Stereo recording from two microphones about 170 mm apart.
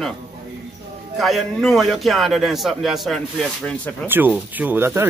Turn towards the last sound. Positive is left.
turn(degrees=-15)  # may be behind; listen again after turning